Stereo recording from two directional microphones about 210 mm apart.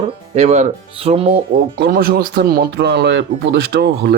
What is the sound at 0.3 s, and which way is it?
Speech, 30° right (ahead or behind).